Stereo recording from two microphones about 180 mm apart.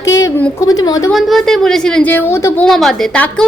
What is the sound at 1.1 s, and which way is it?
A woman's voice, centre (ahead or behind).